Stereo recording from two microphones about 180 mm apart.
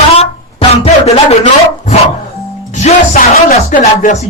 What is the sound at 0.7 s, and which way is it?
Speech, 35° left (ahead or behind).